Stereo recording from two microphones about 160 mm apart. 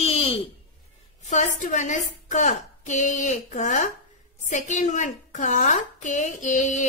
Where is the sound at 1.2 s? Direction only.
50° left (ahead or behind).